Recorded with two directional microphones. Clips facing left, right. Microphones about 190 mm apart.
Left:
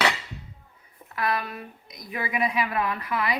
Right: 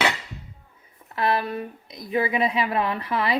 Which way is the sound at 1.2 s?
30° right (ahead or behind).